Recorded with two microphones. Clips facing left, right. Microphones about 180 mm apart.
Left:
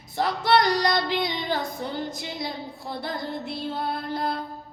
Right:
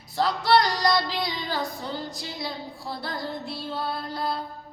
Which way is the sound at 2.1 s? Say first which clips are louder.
Left 2 dB; 20° left (ahead or behind).